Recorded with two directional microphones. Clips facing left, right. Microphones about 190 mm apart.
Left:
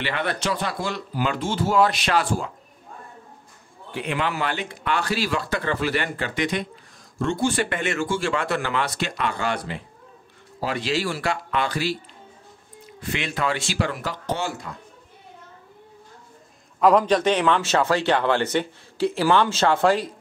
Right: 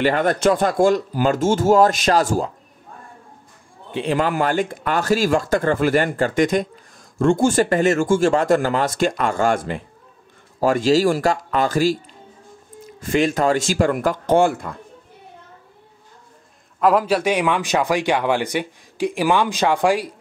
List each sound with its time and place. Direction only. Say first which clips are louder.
0.0 s speech: right 9 dB; 45° right (ahead or behind)
3.9 s a man's voice: right 7 dB; 30° right (ahead or behind)
4.2 s speech: right 7 dB; 45° right (ahead or behind)
16.8 s speech: even; 5° right (ahead or behind)